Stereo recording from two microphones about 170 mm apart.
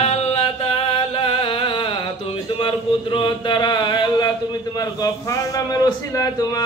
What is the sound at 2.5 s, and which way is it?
A man's voice, 30° left (ahead or behind).